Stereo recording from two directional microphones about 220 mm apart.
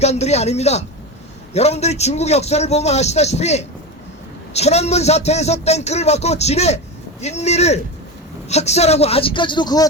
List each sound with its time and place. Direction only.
0.0 s a man's voice: 30° left (ahead or behind)